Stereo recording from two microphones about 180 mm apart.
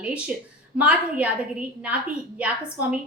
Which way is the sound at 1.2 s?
5° right (ahead or behind).